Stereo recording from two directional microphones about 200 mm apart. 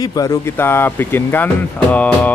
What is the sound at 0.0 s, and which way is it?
Speech, 15° left (ahead or behind).